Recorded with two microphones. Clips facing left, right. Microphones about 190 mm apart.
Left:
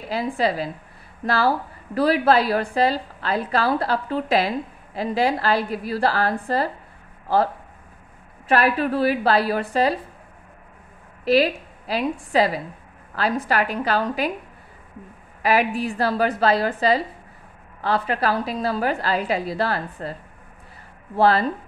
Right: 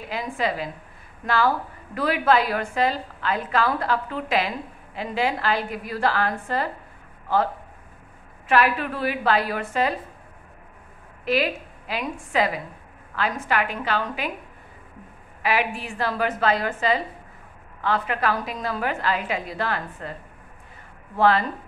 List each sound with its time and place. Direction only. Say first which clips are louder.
0.1 s a woman's voice: left 4 dB; 35° left (ahead or behind)
8.5 s a woman's voice: left 2 dB; 40° left (ahead or behind)
11.2 s a woman's voice: left 5 dB; 35° left (ahead or behind)
15.4 s a woman's voice: left 4 dB; 40° left (ahead or behind)
21.2 s a woman's voice: left 2 dB; 35° left (ahead or behind)